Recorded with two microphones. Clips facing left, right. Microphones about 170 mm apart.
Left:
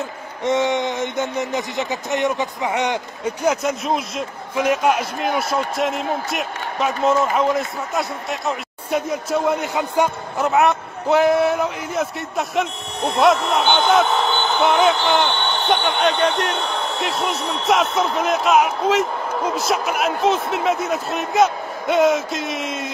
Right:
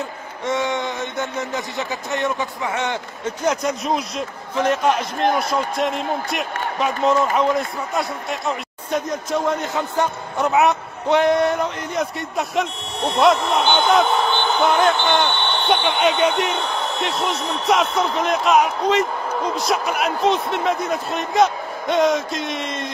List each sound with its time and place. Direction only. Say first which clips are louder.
0.4 s speech: left 3 dB; 20° left (ahead or behind)
3.6 s a man's voice: even; centre (ahead or behind)